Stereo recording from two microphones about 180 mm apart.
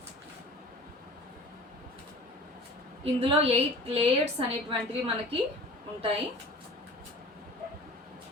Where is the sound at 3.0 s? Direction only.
35° right (ahead or behind).